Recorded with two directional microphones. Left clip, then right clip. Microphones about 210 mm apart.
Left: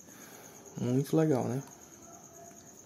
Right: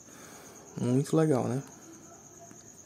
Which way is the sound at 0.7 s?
15° right (ahead or behind).